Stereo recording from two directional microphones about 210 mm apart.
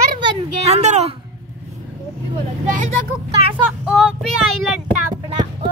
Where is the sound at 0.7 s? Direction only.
35° right (ahead or behind).